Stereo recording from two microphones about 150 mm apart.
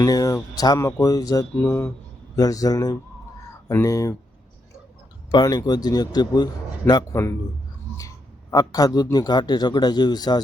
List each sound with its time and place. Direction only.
0.0 s a man's voice: 25° left (ahead or behind)
5.3 s a man's voice: 25° left (ahead or behind)